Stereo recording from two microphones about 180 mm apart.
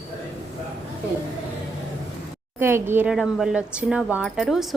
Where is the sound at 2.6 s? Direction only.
15° right (ahead or behind).